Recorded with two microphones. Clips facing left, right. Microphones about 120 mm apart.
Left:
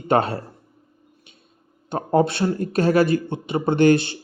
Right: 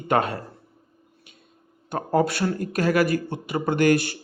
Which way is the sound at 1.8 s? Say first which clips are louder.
Left 3 dB; 25° left (ahead or behind).